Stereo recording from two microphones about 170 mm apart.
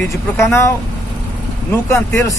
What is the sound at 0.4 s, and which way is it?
Speech, 15° left (ahead or behind).